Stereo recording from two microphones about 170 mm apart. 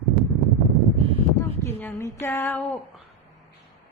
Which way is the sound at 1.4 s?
15° left (ahead or behind).